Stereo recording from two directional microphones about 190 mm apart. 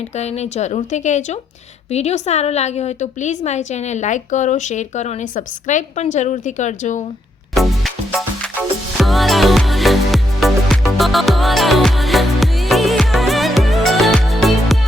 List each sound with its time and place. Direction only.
0.2 s a woman's voice: 35° left (ahead or behind)
7.5 s music: centre (ahead or behind)